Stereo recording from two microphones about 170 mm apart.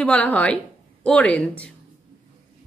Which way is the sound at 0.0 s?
10° left (ahead or behind).